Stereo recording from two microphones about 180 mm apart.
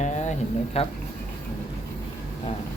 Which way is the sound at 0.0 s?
40° left (ahead or behind).